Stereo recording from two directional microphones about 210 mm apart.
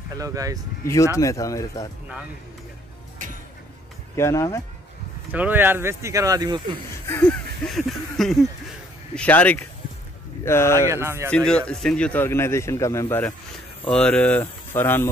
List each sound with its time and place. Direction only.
0.1 s speech: 15° right (ahead or behind)
0.8 s a man's voice: 15° left (ahead or behind)
4.1 s a man's voice: 15° left (ahead or behind)
5.3 s speech: 10° right (ahead or behind)
7.1 s a sound: 10° left (ahead or behind)
9.1 s a man's voice: 5° left (ahead or behind)
10.9 s speech: 10° right (ahead or behind)
11.2 s a man's voice: 5° left (ahead or behind)